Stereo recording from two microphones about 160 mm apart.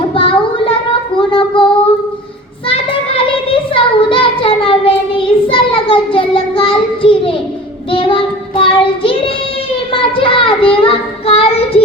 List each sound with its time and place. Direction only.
0.1 s child singing: 35° left (ahead or behind)
2.6 s child singing: 35° left (ahead or behind)